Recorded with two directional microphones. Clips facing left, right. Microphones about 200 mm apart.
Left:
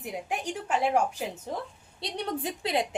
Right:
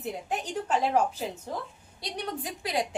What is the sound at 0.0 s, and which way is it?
Speech, 10° left (ahead or behind).